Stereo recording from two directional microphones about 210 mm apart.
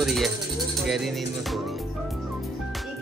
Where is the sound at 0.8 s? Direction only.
Centre (ahead or behind).